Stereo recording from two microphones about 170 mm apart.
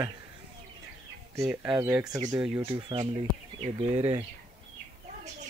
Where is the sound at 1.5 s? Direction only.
5° right (ahead or behind).